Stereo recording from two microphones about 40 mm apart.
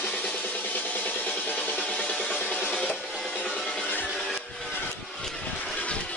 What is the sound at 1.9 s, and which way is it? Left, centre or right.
Music, left.